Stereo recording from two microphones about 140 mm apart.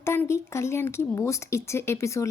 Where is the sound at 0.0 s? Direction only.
20° left (ahead or behind).